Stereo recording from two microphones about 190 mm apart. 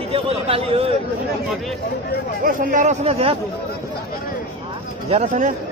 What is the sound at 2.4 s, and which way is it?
Speech, 40° right (ahead or behind).